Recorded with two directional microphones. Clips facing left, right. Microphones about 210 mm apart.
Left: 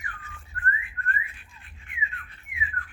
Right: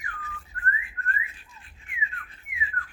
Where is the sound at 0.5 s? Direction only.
30° right (ahead or behind).